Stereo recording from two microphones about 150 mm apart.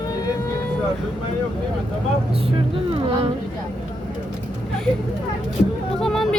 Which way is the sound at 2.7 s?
40° right (ahead or behind).